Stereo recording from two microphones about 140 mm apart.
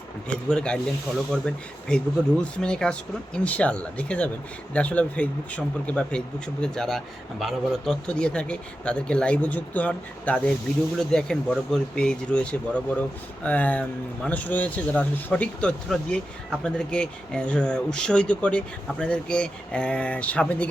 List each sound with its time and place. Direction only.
0.3 s speech: 5° left (ahead or behind)